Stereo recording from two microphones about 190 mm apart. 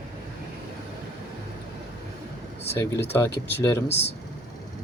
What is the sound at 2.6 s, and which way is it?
Speech, 10° left (ahead or behind).